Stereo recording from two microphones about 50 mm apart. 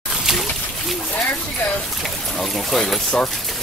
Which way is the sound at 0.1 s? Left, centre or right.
Centre.